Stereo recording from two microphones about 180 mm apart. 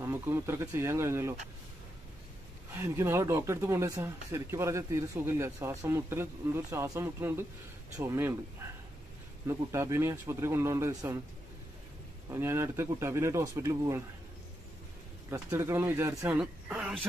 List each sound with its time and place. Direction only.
0.0 s speech: 15° right (ahead or behind)
2.7 s speech: 15° right (ahead or behind)
12.3 s speech: 15° right (ahead or behind)
15.2 s speech: 15° right (ahead or behind)